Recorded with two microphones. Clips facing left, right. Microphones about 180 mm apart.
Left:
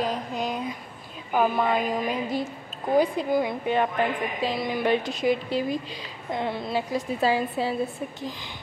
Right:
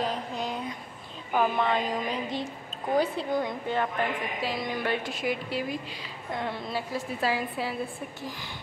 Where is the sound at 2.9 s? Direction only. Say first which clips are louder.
Left 5 dB; 10° left (ahead or behind).